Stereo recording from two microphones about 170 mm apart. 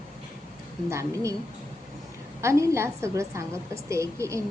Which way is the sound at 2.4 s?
15° right (ahead or behind).